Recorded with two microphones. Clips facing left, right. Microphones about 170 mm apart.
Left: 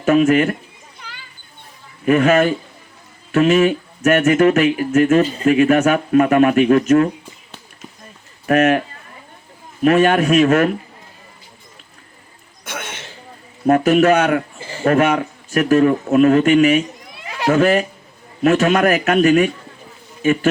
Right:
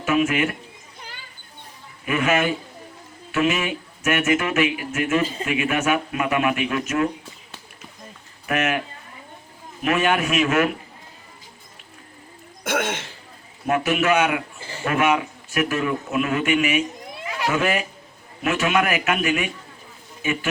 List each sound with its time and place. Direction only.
0.0 s speech: 40° left (ahead or behind)
2.0 s speech: 40° left (ahead or behind)
8.4 s speech: 40° left (ahead or behind)
9.8 s speech: 40° left (ahead or behind)
12.6 s throat clearing: 90° right
13.7 s speech: 40° left (ahead or behind)
17.2 s a sound: 40° left (ahead or behind)
18.4 s speech: 40° left (ahead or behind)